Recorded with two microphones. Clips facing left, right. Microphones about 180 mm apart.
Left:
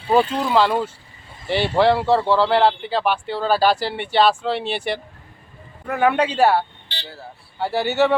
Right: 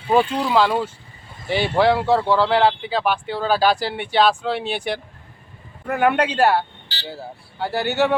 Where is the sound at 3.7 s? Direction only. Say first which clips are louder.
Even; 5° right (ahead or behind).